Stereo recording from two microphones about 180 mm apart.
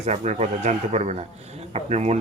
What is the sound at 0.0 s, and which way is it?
Speech, 40° right (ahead or behind).